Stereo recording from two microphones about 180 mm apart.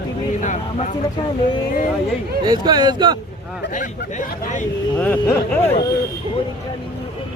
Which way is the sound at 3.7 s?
45° left (ahead or behind).